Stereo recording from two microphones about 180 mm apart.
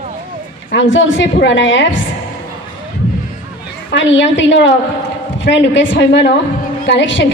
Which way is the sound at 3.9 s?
90° left.